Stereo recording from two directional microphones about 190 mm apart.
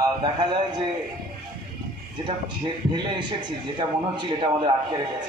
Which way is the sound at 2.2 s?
25° right (ahead or behind).